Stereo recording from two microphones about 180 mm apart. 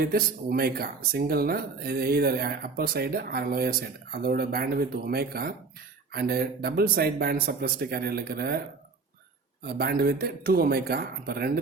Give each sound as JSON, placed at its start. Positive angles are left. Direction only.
{"t": 0.0, "sound": "speech", "side_deg": -55}
{"t": 9.6, "sound": "speech", "side_deg": -55}